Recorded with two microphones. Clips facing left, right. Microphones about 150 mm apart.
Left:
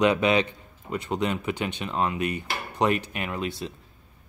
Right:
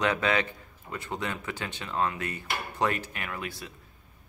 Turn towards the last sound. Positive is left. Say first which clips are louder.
# left 7 dB
turn(degrees=25)  # may be behind; listen again after turning